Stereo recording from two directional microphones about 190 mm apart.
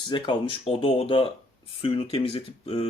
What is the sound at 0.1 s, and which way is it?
Speech, 25° left (ahead or behind).